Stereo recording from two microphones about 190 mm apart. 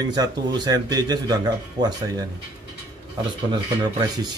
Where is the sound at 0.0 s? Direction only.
20° right (ahead or behind).